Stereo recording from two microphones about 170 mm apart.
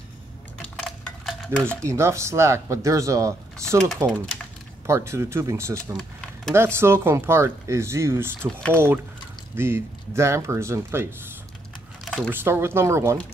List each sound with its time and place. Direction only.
0.6 s stir: centre (ahead or behind)
1.8 s speech: 15° right (ahead or behind)
12.0 s typing: 5° left (ahead or behind)
12.3 s speech: 15° right (ahead or behind)